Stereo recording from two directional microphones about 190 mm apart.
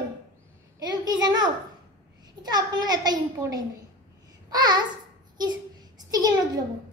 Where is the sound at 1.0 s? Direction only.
20° right (ahead or behind).